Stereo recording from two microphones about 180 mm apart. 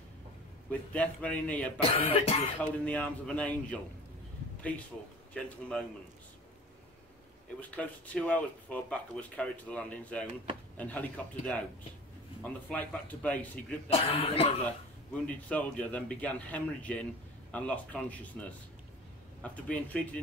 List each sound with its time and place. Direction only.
0.7 s a man's voice: 5° left (ahead or behind)
1.8 s speech: 35° left (ahead or behind)
2.6 s a man's voice: 10° left (ahead or behind)
5.3 s a man's voice: 5° left (ahead or behind)
7.7 s a man's voice: 5° left (ahead or behind)
13.8 s speech: 35° left (ahead or behind)
15.5 s a man's voice: 5° left (ahead or behind)
19.4 s a man's voice: 10° left (ahead or behind)